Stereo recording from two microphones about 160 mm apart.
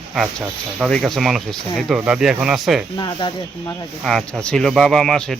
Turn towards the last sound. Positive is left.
turn(degrees=5)  # may be behind; listen again after turning